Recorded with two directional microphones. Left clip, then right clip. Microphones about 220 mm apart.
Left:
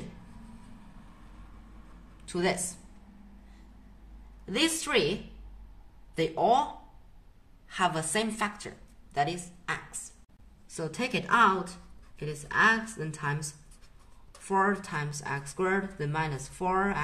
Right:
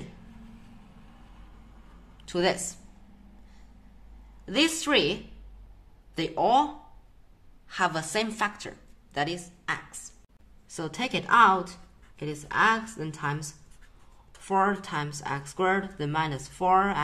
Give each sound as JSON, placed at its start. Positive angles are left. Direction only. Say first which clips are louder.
{"t": 2.2, "sound": "speech", "louder": "right 3 dB", "side_deg": -25}
{"t": 4.5, "sound": "a woman's voice", "louder": "right 4 dB", "side_deg": -20}
{"t": 12.4, "sound": "speech", "louder": "right 1 dB", "side_deg": -25}
{"t": 14.5, "sound": "speech", "louder": "right 2 dB", "side_deg": -25}